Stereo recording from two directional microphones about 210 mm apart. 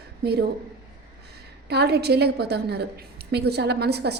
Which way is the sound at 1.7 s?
50° right (ahead or behind).